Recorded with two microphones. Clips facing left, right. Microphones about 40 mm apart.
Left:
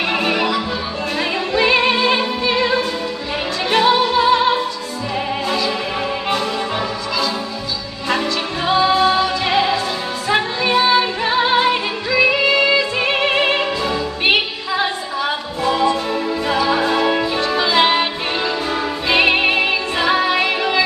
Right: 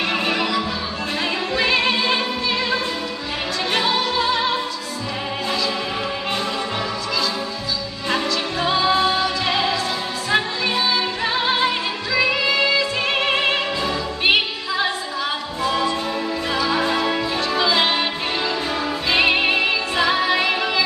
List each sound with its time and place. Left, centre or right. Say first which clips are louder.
0.1 s music: left 3 dB; centre
3.7 s opera: left 7 dB; centre
8.1 s music: left 3 dB; centre